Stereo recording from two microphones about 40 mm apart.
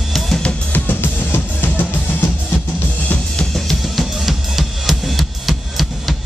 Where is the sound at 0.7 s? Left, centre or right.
Left.